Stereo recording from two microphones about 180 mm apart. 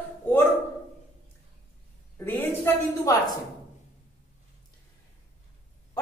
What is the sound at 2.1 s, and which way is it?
Speech, 10° left (ahead or behind).